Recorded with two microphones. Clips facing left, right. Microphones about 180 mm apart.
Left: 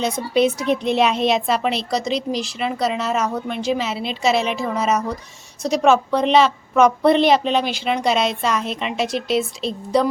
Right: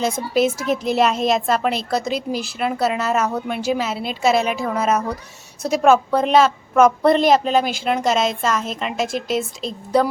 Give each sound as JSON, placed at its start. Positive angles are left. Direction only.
{"t": 0.7, "sound": "speech", "side_deg": -5}
{"t": 9.0, "sound": "speech", "side_deg": -45}
{"t": 9.6, "sound": "speech", "side_deg": -5}